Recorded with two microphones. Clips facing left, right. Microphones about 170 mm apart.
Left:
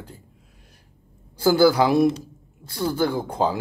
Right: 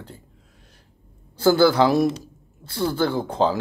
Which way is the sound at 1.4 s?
10° left (ahead or behind).